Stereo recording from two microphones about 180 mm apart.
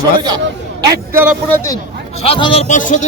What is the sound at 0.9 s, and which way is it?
Speech, 15° right (ahead or behind).